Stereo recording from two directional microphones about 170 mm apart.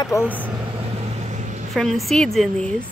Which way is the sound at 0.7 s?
35° right (ahead or behind).